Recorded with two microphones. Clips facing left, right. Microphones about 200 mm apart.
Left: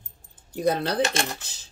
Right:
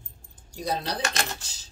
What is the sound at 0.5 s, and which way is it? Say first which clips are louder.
Speech: left 6 dB; 55° left (ahead or behind).